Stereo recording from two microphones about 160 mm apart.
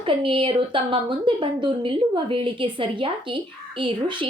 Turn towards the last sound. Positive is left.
turn(degrees=-30)  # may be behind; listen again after turning